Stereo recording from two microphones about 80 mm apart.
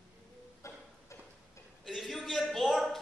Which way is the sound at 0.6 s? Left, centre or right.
Left.